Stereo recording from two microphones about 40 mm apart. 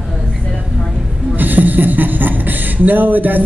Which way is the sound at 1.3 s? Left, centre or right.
Right.